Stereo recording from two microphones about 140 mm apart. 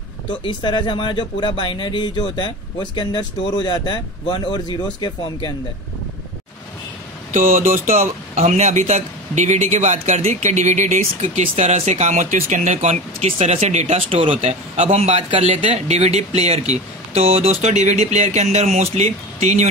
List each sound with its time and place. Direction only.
0.4 s speech: 35° left (ahead or behind)
7.3 s speech: 70° right (ahead or behind)
8.4 s a man's voice: 55° right (ahead or behind)